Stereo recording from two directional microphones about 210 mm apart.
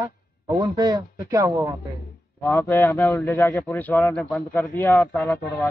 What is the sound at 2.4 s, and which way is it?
A man's voice, 10° left (ahead or behind).